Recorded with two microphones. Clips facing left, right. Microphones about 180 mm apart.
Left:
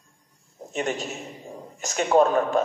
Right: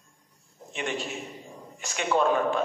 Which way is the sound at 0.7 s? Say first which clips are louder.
Left 4 dB; 40° left (ahead or behind).